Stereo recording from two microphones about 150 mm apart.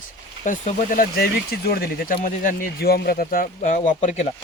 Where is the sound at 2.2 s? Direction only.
65° left (ahead or behind).